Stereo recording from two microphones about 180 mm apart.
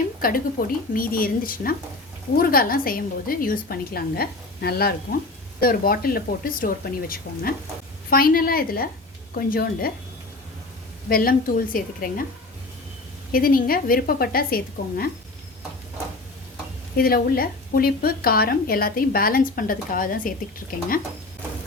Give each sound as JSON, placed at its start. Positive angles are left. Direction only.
{"t": 0.2, "sound": "a woman's voice", "side_deg": 50}
{"t": 11.1, "sound": "a woman's voice", "side_deg": 55}
{"t": 13.3, "sound": "speech", "side_deg": 50}
{"t": 17.0, "sound": "speech", "side_deg": 55}